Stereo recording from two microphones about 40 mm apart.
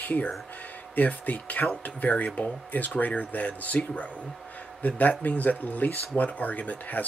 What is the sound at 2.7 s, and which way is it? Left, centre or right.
Speech, left.